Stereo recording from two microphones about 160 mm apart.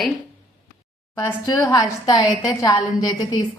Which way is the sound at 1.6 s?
25° left (ahead or behind).